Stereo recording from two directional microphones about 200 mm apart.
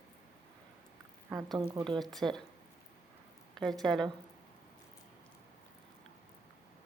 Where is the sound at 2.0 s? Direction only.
Centre (ahead or behind).